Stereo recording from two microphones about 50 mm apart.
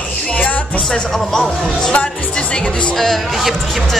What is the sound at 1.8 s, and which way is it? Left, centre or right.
Speech, left.